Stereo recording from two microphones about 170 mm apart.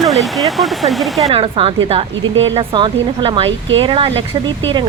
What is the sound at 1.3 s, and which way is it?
Speech, 30° right (ahead or behind).